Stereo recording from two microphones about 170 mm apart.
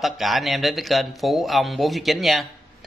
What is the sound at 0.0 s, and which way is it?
A man's voice, centre (ahead or behind).